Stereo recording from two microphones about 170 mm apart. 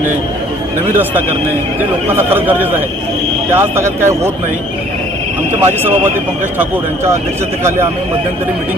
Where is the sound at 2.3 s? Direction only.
10° right (ahead or behind).